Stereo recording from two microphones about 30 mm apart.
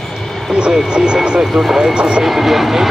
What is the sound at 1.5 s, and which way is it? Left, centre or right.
Speech, centre.